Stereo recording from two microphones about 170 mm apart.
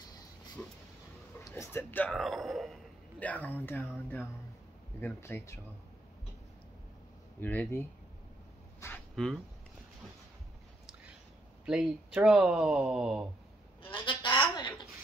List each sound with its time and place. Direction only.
0.6 s speech: 5° left (ahead or behind)
2.1 s a man's voice: centre (ahead or behind)
7.3 s a man's voice: 10° left (ahead or behind)
8.8 s a sound: 5° left (ahead or behind)
11.6 s speech: 5° right (ahead or behind)
14.0 s a sound: 30° left (ahead or behind)